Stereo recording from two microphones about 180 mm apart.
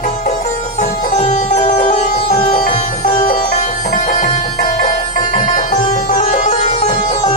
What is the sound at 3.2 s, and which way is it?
Music, 50° left (ahead or behind).